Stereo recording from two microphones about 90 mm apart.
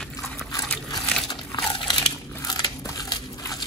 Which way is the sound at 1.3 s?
55° left (ahead or behind).